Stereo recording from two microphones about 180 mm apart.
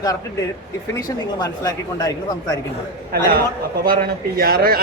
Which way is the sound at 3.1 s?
55° right (ahead or behind).